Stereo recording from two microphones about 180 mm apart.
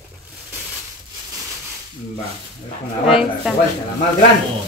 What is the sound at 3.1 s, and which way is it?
Speech, 5° right (ahead or behind).